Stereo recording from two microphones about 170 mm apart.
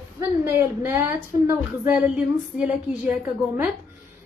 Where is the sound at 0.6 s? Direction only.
15° right (ahead or behind).